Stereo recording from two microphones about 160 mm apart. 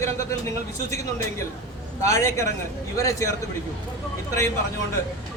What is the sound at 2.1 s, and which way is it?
A man's voice, 20° left (ahead or behind).